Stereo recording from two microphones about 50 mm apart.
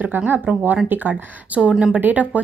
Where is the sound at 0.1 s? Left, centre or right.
Right.